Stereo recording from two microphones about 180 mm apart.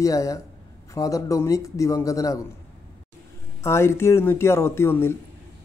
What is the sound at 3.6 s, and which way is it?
A man's voice, 15° left (ahead or behind).